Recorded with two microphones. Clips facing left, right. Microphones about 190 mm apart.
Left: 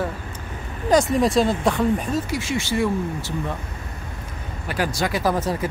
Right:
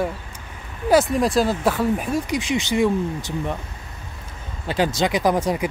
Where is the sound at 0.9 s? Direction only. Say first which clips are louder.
Even; centre (ahead or behind); by 3.3 s 20° right (ahead or behind).